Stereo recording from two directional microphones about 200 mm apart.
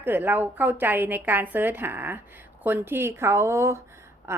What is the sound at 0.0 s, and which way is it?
Speech, 10° right (ahead or behind).